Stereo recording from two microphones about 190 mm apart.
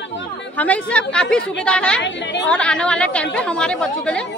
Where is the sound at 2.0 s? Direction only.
70° left (ahead or behind).